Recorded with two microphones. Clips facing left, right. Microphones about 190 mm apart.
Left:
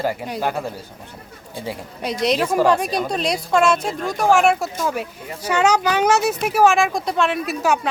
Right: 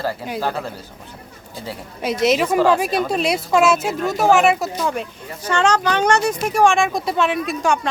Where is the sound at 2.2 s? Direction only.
5° right (ahead or behind).